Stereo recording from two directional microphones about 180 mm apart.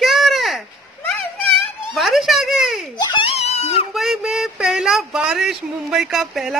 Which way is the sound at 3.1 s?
30° left (ahead or behind).